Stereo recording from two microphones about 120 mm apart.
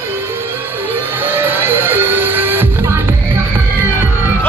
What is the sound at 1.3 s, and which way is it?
Music, 15° right (ahead or behind).